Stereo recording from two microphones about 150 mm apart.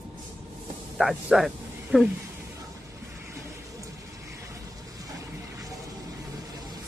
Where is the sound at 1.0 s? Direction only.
Centre (ahead or behind).